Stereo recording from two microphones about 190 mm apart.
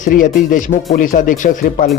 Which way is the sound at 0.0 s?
45° left (ahead or behind).